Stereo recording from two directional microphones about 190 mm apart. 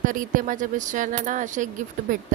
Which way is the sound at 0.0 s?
45° right (ahead or behind).